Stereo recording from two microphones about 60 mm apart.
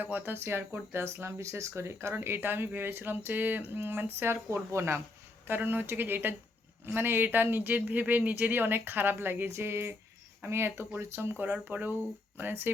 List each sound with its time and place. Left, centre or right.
0.0 s speech: right
5.5 s speech: right